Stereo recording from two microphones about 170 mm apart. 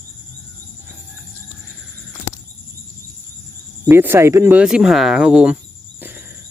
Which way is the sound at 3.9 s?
15° right (ahead or behind).